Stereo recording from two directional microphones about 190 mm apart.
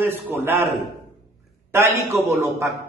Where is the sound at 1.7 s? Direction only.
15° right (ahead or behind).